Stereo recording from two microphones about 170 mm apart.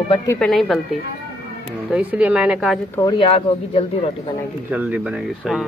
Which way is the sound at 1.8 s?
5° right (ahead or behind).